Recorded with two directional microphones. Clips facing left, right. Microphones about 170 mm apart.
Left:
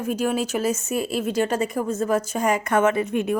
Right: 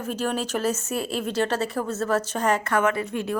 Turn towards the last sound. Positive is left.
turn(degrees=15)  # may be behind; listen again after turning